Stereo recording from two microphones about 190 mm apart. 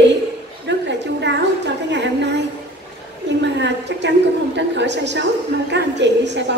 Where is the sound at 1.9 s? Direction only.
65° right (ahead or behind).